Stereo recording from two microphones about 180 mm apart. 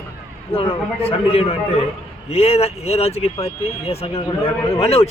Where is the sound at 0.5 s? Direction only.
30° left (ahead or behind).